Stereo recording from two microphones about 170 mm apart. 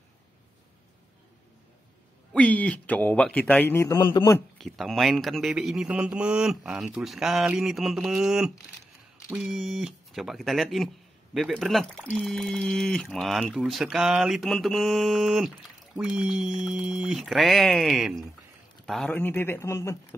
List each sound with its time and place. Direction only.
2.3 s speech: 10° left (ahead or behind); by 4.4 s 25° left (ahead or behind)
4.6 s speech: centre (ahead or behind)